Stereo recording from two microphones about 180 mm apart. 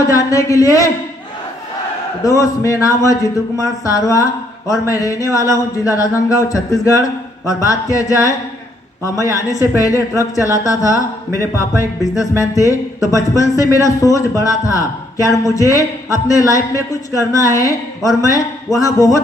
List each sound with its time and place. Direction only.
0.0 s speech: 20° left (ahead or behind)
2.2 s speech: 20° left (ahead or behind)